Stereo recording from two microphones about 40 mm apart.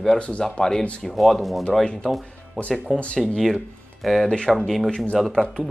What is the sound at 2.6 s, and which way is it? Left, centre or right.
Speech, left.